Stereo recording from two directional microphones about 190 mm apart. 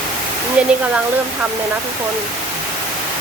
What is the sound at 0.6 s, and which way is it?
Speech, 5° right (ahead or behind).